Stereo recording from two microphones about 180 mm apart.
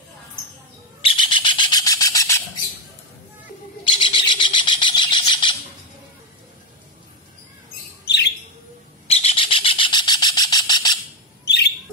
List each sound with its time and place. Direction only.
1.0 s bird: 30° left (ahead or behind)
4.0 s bird: 25° left (ahead or behind)
8.0 s bird: 70° left (ahead or behind)
9.0 s bird: 35° left (ahead or behind)
11.4 s bird: 70° left (ahead or behind)